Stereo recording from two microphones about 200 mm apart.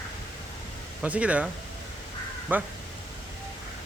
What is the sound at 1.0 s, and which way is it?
Speech, 5° right (ahead or behind).